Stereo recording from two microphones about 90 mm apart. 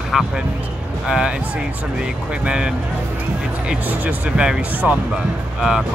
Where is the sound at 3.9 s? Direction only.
15° right (ahead or behind).